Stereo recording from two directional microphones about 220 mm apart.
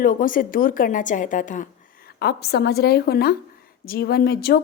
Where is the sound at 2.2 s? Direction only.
50° left (ahead or behind).